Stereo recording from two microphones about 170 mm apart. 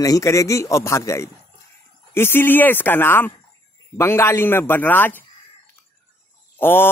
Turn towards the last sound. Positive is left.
turn(degrees=15)  # may be behind; listen again after turning